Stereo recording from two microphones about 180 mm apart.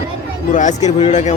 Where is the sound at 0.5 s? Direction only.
40° left (ahead or behind).